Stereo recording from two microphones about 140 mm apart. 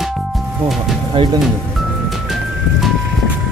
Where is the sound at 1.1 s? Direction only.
35° right (ahead or behind).